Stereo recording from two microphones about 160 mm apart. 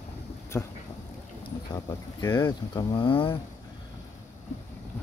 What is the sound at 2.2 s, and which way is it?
Speech, 15° left (ahead or behind).